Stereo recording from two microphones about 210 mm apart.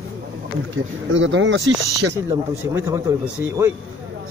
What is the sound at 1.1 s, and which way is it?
Speech, 65° right (ahead or behind).